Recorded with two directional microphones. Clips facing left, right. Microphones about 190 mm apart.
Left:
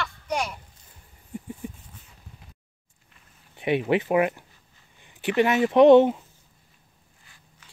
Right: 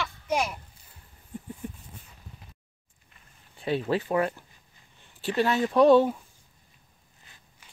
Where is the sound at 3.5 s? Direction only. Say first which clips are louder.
Left 4 dB; 15° left (ahead or behind).